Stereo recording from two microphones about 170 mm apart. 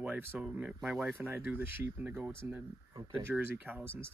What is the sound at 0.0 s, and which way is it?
Speech, 10° right (ahead or behind).